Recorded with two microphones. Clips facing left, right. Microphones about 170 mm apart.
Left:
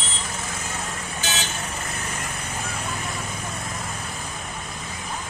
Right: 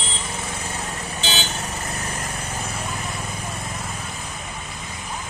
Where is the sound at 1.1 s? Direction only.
30° right (ahead or behind).